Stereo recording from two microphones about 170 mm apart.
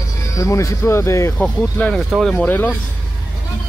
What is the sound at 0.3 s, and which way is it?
Speech, 20° left (ahead or behind).